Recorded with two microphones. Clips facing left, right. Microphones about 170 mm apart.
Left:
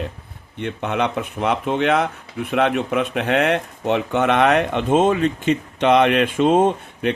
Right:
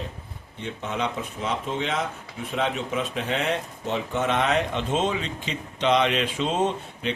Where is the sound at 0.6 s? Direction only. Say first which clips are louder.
Left 7 dB; 65° left (ahead or behind).